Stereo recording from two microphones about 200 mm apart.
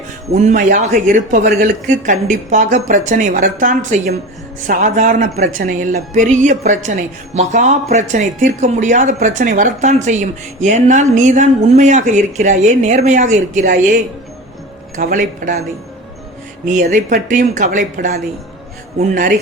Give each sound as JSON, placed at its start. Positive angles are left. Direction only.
{"t": 0.3, "sound": "speech", "side_deg": -35}
{"t": 16.6, "sound": "speech", "side_deg": -40}